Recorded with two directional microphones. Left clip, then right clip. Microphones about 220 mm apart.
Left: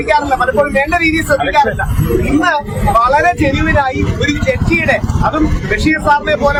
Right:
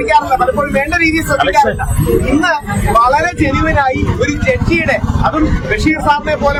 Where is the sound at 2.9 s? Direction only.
Centre (ahead or behind).